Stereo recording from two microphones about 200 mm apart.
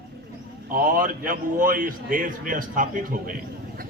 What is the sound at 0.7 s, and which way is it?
A man's voice, 45° right (ahead or behind).